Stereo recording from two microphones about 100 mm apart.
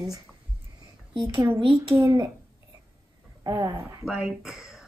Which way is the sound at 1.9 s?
30° right (ahead or behind).